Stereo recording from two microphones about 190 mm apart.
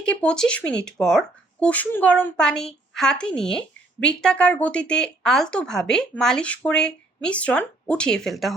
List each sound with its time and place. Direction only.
0.0 s speech: 5° left (ahead or behind)